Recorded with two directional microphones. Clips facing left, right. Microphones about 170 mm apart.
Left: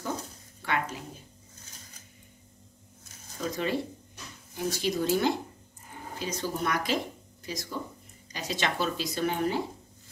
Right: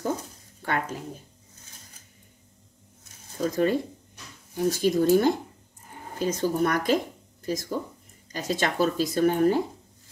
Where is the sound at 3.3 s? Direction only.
45° right (ahead or behind).